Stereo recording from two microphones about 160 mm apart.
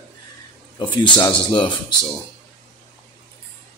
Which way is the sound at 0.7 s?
30° left (ahead or behind).